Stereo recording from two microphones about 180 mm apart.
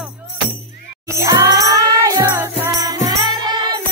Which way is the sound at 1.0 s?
15° right (ahead or behind).